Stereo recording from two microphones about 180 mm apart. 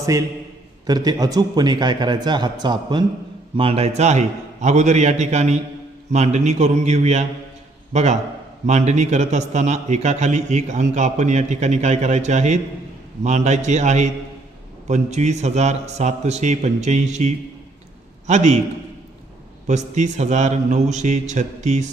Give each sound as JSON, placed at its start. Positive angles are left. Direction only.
{"t": 0.0, "sound": "a man's voice", "side_deg": -20}
{"t": 19.6, "sound": "a man's voice", "side_deg": -40}